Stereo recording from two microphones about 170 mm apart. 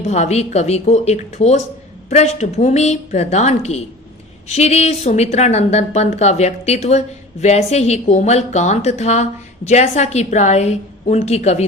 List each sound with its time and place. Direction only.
0.1 s a woman's voice: 40° left (ahead or behind)